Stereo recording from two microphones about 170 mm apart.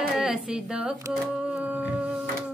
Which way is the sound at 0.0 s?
5° right (ahead or behind).